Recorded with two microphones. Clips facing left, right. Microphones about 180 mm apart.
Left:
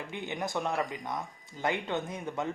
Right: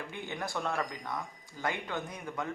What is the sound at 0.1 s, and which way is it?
Speech, 20° left (ahead or behind).